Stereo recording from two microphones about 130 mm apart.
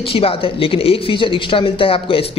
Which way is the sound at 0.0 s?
45° left (ahead or behind).